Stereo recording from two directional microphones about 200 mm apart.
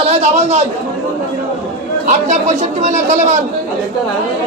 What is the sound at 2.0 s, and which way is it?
Speech, 35° right (ahead or behind).